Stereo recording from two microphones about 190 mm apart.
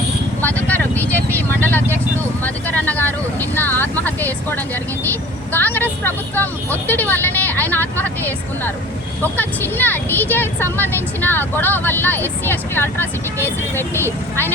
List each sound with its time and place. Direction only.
0.4 s vehicle: 10° left (ahead or behind)
9.2 s speech: 10° left (ahead or behind)